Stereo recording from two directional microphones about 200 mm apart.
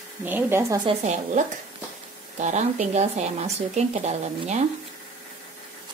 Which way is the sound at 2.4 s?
35° right (ahead or behind).